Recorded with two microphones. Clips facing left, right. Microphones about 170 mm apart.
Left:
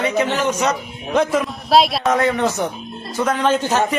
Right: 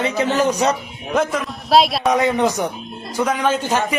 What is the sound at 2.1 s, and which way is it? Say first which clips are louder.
A man's voice: right 1 dB; 15° right (ahead or behind).